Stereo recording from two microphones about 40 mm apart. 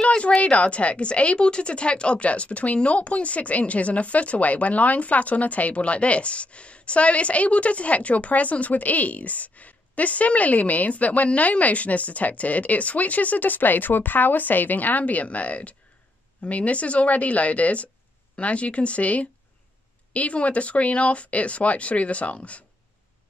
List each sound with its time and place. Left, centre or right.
0.1 s a woman's voice: left